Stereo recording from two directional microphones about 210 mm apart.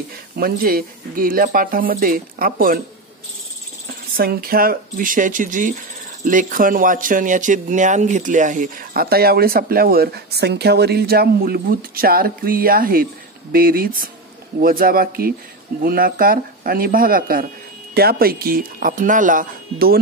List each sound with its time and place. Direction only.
0.4 s speech: 45° right (ahead or behind)
3.8 s speech: 45° right (ahead or behind)